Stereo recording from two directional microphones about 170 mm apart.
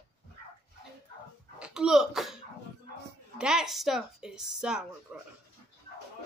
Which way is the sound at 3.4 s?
5° right (ahead or behind).